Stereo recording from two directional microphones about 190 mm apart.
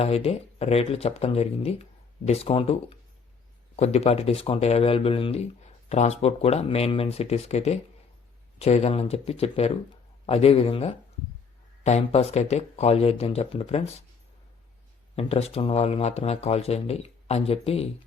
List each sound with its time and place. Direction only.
0.0 s speech: 30° left (ahead or behind)
15.1 s speech: 30° left (ahead or behind)